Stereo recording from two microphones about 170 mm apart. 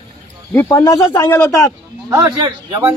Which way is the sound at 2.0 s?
20° right (ahead or behind).